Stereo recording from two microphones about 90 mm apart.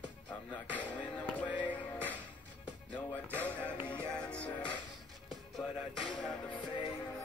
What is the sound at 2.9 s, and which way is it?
Music, 15° left (ahead or behind).